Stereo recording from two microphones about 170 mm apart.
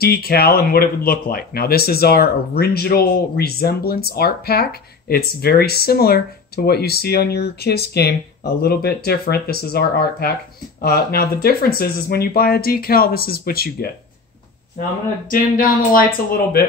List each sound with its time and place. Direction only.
0.0 s speech: 65° left (ahead or behind)
15.2 s speech: 55° left (ahead or behind)